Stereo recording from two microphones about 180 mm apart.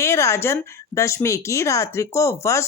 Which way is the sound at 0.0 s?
15° left (ahead or behind).